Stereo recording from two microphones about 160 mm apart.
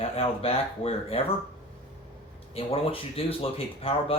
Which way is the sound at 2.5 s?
35° left (ahead or behind).